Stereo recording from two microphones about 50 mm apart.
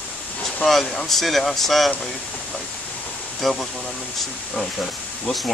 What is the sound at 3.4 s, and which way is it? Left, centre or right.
Speech, centre.